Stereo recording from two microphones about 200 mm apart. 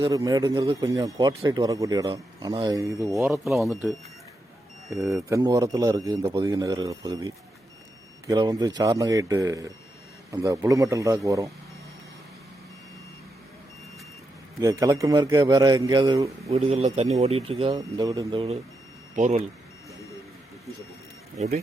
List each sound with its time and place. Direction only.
0.0 s speech: 20° right (ahead or behind)
3.4 s speech: centre (ahead or behind)
5.1 s speech: 15° right (ahead or behind)
14.6 s speech: 15° right (ahead or behind)
16.5 s speech: 30° right (ahead or behind)
21.3 s speech: 35° right (ahead or behind)